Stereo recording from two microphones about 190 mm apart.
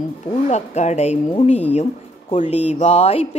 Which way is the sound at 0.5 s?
35° left (ahead or behind).